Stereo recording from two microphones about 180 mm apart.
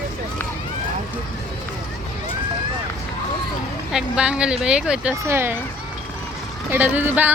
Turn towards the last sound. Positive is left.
turn(degrees=-10)  # may be behind; listen again after turning